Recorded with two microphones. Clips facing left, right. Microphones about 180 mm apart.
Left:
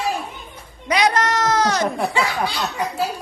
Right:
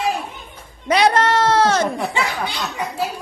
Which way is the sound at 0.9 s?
30° right (ahead or behind).